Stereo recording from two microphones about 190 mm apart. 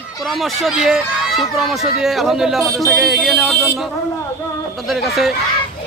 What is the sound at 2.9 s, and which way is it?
Speech, centre (ahead or behind).